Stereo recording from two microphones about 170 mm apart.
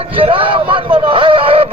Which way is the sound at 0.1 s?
30° right (ahead or behind).